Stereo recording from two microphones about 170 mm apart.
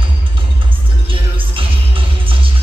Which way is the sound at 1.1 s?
30° right (ahead or behind).